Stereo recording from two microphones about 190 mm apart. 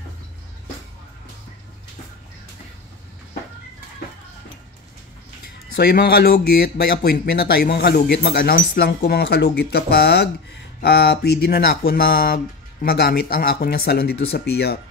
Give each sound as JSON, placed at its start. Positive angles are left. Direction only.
{"t": 5.8, "sound": "speech", "side_deg": 55}